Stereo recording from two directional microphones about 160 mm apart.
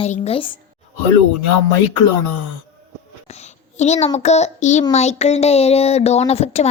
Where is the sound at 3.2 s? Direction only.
45° left (ahead or behind).